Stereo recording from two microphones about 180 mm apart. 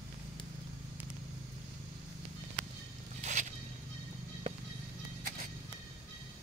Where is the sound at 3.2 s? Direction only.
45° right (ahead or behind).